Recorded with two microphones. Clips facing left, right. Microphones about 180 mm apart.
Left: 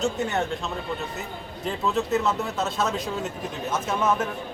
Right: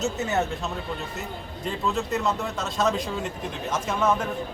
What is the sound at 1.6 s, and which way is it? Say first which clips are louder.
Speech: left 2 dB; centre (ahead or behind).